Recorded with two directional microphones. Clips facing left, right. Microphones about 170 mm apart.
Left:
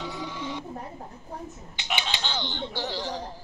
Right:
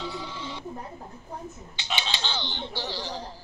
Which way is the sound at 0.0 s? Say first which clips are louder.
Left 1 dB; 20° left (ahead or behind).